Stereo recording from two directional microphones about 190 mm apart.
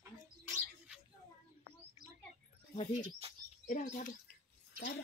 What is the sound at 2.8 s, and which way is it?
Speech, 35° left (ahead or behind).